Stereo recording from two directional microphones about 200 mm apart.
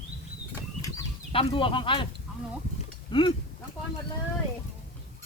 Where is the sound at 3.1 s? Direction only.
25° left (ahead or behind).